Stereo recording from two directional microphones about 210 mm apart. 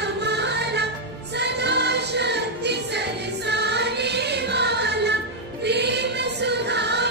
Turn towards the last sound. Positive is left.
turn(degrees=-55)  # may be behind; listen again after turning